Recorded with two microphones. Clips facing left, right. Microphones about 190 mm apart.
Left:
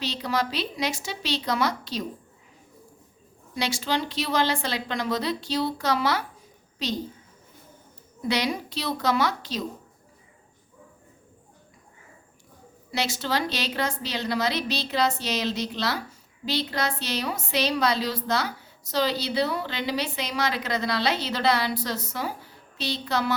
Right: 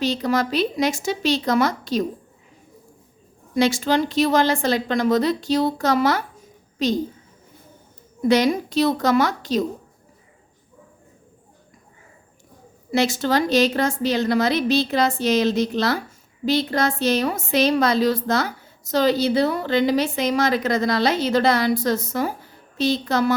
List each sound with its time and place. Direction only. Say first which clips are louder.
0.0 s a woman's voice: right 7 dB; 45° right (ahead or behind)
3.5 s a woman's voice: right 9 dB; 50° right (ahead or behind)
8.3 s a woman's voice: right 9 dB; 45° right (ahead or behind)
12.9 s a woman's voice: right 8 dB; 50° right (ahead or behind)